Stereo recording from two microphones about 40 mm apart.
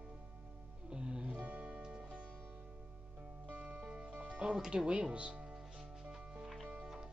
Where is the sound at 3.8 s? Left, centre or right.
Right.